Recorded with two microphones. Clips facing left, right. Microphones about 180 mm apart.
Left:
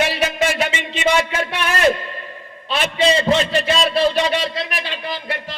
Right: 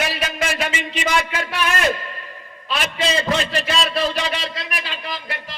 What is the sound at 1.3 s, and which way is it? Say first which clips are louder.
Speech: left 2 dB; 25° left (ahead or behind).